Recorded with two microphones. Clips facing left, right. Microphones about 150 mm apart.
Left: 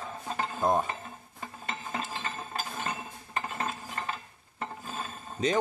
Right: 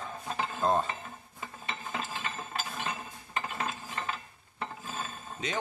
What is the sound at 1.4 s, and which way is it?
Dishes, 40° left (ahead or behind).